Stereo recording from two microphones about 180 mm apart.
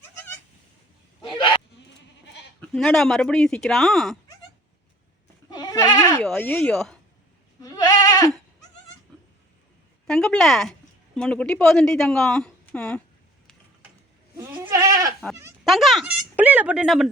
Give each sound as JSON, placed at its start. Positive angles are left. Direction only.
{"t": 1.2, "sound": "a sound", "side_deg": 25}
{"t": 2.7, "sound": "speech", "side_deg": 0}
{"t": 5.5, "sound": "goat", "side_deg": 20}
{"t": 6.1, "sound": "speech", "side_deg": 5}
{"t": 7.6, "sound": "goat", "side_deg": 20}
{"t": 10.1, "sound": "speech", "side_deg": 5}
{"t": 14.3, "sound": "goat", "side_deg": -15}
{"t": 15.6, "sound": "speech", "side_deg": 0}